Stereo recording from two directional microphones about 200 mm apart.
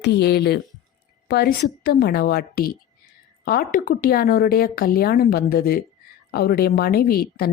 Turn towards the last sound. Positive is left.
turn(degrees=50)  # may be behind; listen again after turning